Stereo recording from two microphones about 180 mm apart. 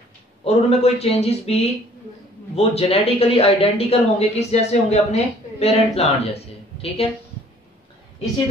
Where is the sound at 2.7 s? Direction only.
35° left (ahead or behind).